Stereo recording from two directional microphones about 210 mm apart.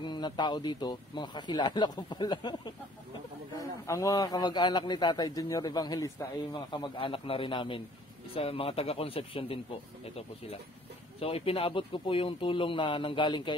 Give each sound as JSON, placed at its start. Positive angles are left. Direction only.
{"t": 0.0, "sound": "a man's voice", "side_deg": 20}
{"t": 3.8, "sound": "a man's voice", "side_deg": 15}
{"t": 11.1, "sound": "a man's voice", "side_deg": 25}